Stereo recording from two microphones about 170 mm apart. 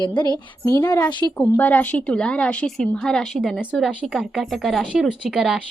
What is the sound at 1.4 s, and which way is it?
A woman's voice, 10° left (ahead or behind).